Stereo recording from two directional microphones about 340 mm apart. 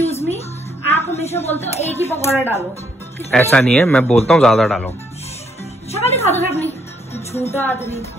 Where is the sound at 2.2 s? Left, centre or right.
Centre.